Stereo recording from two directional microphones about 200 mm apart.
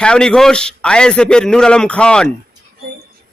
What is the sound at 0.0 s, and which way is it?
A man's voice, 5° left (ahead or behind).